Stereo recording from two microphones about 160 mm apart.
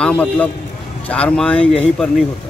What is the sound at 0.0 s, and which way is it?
Speech, 10° left (ahead or behind).